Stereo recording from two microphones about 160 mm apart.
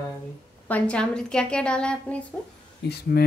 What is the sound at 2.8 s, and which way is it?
Speech, 90° left.